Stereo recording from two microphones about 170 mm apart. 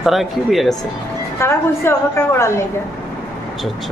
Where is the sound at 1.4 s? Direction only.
15° left (ahead or behind).